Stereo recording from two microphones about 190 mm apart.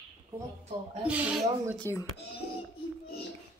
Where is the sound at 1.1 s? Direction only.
5° right (ahead or behind).